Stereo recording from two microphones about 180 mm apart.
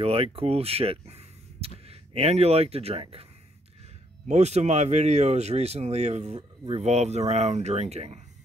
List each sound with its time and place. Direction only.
0.0 s speech: 30° right (ahead or behind)
4.3 s speech: 40° right (ahead or behind)